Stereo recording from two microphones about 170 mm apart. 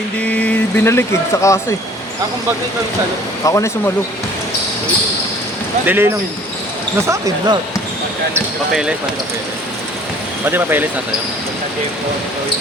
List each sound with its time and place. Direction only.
0.3 s speech: 10° left (ahead or behind)
3.4 s speech: 15° left (ahead or behind)
5.8 s speech: 10° right (ahead or behind)
8.7 s speech: 5° right (ahead or behind)
10.4 s speech: 10° right (ahead or behind)